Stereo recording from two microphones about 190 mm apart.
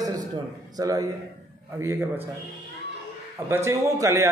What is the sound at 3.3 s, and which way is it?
Speech, 10° right (ahead or behind).